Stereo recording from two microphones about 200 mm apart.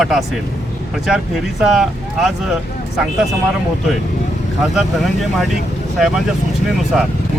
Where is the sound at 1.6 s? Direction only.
Centre (ahead or behind).